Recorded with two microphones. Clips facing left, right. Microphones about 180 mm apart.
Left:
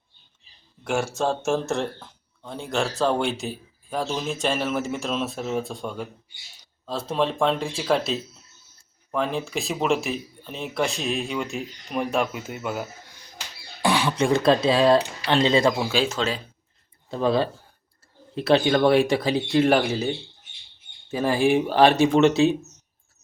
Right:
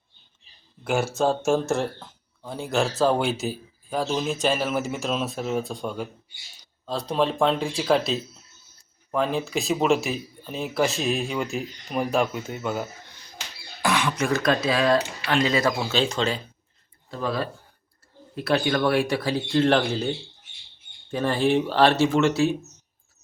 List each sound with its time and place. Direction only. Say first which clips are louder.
0.9 s speech: right 2 dB; centre (ahead or behind)
13.8 s speech: left 3 dB; 30° left (ahead or behind)
15.8 s speech: even; 10° left (ahead or behind)
17.1 s speech: left 6 dB; 25° left (ahead or behind)